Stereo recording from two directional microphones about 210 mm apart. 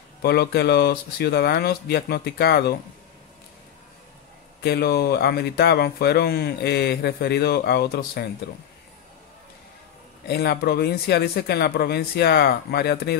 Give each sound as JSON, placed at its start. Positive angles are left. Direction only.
{"t": 0.2, "sound": "speech", "side_deg": 50}
{"t": 4.6, "sound": "speech", "side_deg": 50}
{"t": 10.2, "sound": "speech", "side_deg": 50}